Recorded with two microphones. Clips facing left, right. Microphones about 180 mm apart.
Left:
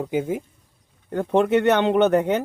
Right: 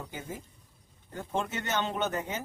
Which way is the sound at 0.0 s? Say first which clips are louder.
Left 16 dB; 60° left (ahead or behind).